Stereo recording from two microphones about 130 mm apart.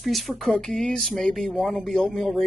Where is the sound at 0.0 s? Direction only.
Centre (ahead or behind).